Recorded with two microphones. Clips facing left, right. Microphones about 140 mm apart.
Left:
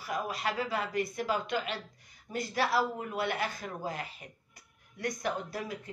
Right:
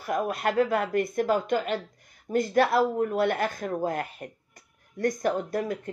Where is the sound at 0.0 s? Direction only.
50° right (ahead or behind).